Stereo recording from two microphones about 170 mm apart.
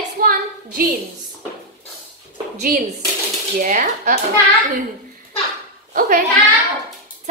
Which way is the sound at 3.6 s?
50° right (ahead or behind).